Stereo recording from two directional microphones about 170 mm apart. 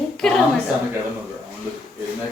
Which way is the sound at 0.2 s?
Centre (ahead or behind).